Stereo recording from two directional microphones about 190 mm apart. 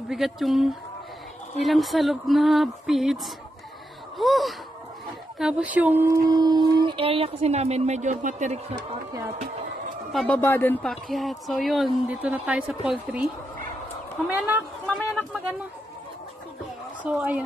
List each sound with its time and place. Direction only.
0.1 s a woman's voice: centre (ahead or behind)
4.2 s a woman's voice: centre (ahead or behind); by 8.7 s 40° right (ahead or behind)
10.1 s a woman's voice: 5° left (ahead or behind)
14.2 s speech: 10° right (ahead or behind)
14.9 s a woman's voice: 5° left (ahead or behind)
17.0 s speech: 5° right (ahead or behind)